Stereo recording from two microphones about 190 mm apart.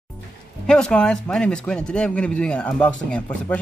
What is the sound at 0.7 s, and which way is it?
A man's voice, 5° left (ahead or behind).